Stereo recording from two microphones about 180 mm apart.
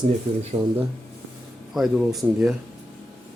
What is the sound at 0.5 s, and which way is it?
Speech, 20° right (ahead or behind).